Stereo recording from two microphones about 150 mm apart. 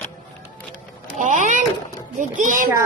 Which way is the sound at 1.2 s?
55° right (ahead or behind).